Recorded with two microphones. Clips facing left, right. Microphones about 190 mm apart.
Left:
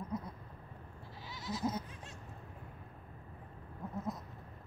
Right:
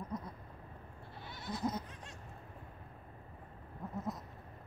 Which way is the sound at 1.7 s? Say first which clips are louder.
Left 1 dB; 5° left (ahead or behind).